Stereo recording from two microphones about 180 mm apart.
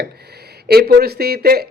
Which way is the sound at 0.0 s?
65° right (ahead or behind).